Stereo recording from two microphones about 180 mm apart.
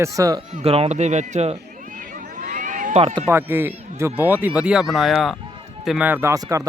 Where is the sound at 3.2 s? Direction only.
15° right (ahead or behind).